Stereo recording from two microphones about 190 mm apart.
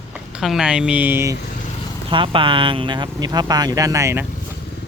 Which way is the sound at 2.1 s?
25° right (ahead or behind).